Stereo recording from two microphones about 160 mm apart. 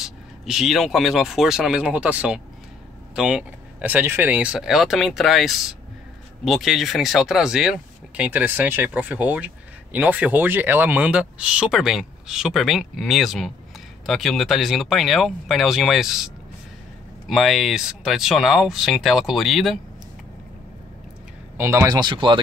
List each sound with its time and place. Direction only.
0.0 s speech: 5° right (ahead or behind)
17.3 s speech: centre (ahead or behind)
21.5 s speech: 15° right (ahead or behind)